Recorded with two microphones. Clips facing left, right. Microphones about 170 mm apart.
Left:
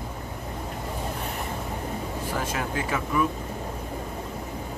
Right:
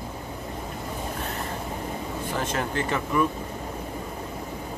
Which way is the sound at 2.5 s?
10° left (ahead or behind).